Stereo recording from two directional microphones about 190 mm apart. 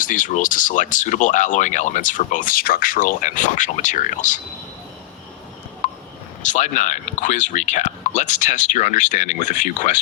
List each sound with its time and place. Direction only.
0.0 s speech: 45° left (ahead or behind)
5.8 s a sound: 40° left (ahead or behind)
6.5 s speech: 40° left (ahead or behind)